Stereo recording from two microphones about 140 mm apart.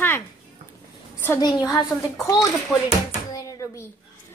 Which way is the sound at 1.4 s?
25° left (ahead or behind).